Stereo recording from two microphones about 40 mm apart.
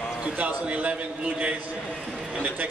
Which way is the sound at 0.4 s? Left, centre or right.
Right.